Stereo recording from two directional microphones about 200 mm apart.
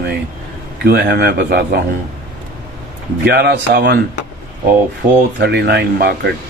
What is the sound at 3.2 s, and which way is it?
Speech, 55° right (ahead or behind).